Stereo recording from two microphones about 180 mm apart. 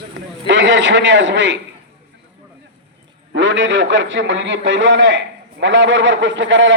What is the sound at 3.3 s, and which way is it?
A man's voice, 90° right.